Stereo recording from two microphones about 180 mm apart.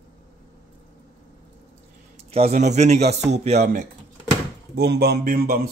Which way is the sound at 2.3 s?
35° right (ahead or behind).